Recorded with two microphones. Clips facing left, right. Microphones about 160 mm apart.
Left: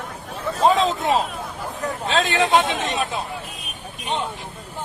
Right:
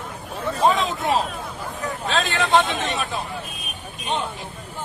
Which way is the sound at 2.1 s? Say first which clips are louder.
Left 2 dB; 20° left (ahead or behind).